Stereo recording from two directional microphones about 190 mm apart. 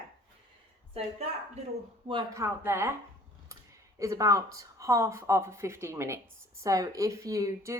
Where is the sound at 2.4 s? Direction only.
15° right (ahead or behind).